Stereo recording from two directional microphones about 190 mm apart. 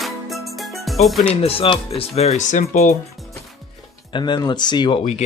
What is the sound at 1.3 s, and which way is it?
Speech, 30° left (ahead or behind).